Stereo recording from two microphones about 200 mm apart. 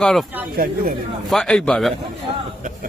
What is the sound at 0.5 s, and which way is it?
Speech, 45° right (ahead or behind).